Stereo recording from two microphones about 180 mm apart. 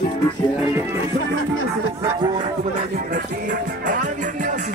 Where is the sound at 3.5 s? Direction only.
45° right (ahead or behind).